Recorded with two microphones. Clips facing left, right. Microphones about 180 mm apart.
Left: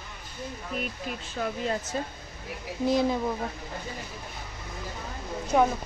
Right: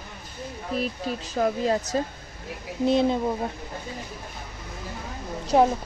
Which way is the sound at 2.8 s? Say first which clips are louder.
Right 3 dB; 25° right (ahead or behind).